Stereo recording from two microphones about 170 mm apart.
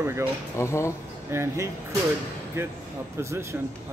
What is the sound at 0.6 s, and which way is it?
Speech, 15° left (ahead or behind).